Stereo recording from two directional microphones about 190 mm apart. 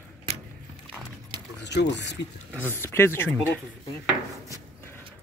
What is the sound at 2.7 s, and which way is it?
Speech, 15° left (ahead or behind).